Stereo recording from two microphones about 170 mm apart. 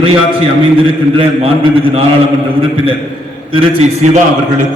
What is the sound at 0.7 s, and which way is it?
A man's voice, 30° right (ahead or behind).